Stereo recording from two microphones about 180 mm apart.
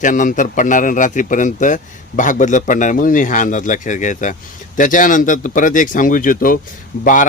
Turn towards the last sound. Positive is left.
turn(degrees=45)  # may be behind; listen again after turning